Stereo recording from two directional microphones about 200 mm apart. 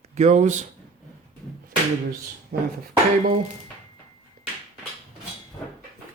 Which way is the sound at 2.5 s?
50° right (ahead or behind).